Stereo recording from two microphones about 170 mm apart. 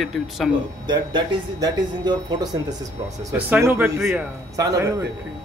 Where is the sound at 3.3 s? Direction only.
10° right (ahead or behind).